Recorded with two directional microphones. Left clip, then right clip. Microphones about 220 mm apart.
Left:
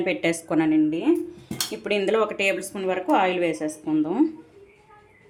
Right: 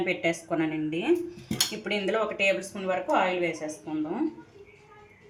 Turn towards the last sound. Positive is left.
turn(degrees=45)  # may be behind; listen again after turning